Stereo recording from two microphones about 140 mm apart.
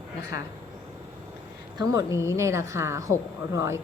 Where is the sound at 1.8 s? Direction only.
25° right (ahead or behind).